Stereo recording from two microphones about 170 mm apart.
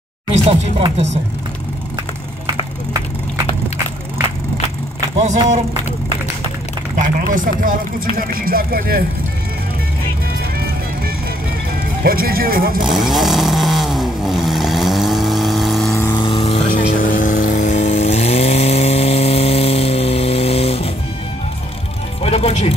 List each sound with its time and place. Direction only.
0.5 s chopping: 35° right (ahead or behind)
5.2 s speech: 45° right (ahead or behind)
7.2 s speech: 50° right (ahead or behind)
12.0 s speech: 60° right (ahead or behind)
12.8 s vehicle: centre (ahead or behind)
16.2 s vehicle: 30° left (ahead or behind)
16.6 s vehicle: 50° left (ahead or behind); by 20.9 s 35° left (ahead or behind)
22.2 s music: 35° left (ahead or behind)